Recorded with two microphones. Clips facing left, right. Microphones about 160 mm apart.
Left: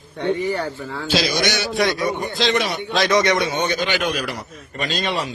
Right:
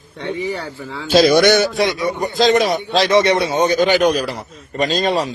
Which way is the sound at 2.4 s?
40° right (ahead or behind).